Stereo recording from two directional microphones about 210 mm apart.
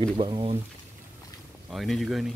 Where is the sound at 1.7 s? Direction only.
Centre (ahead or behind).